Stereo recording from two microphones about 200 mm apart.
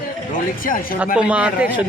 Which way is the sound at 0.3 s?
45° left (ahead or behind).